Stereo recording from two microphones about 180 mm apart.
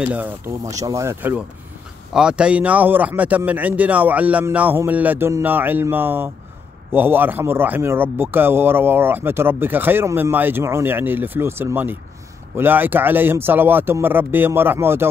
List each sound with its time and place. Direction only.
0.0 s a man's voice: 10° right (ahead or behind)